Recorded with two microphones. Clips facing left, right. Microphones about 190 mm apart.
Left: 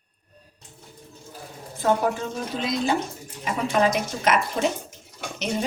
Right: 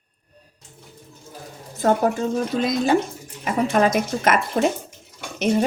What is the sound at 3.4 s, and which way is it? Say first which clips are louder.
Speech: right 3 dB; 50° right (ahead or behind).